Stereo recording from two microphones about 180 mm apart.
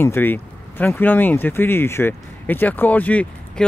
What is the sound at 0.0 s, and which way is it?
Speech, 10° left (ahead or behind).